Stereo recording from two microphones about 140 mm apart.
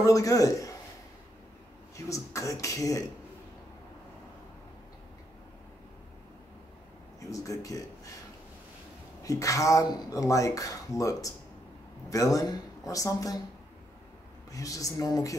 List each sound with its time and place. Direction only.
0.0 s speech: 25° left (ahead or behind)
2.0 s speech: 20° left (ahead or behind)
7.2 s speech: 25° left (ahead or behind)
9.2 s speech: 25° left (ahead or behind)
14.5 s speech: 25° left (ahead or behind)